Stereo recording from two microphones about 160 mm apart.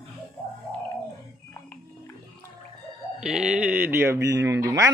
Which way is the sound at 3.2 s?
5° right (ahead or behind).